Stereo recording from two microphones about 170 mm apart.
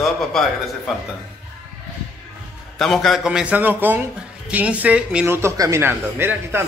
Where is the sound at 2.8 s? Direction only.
Centre (ahead or behind).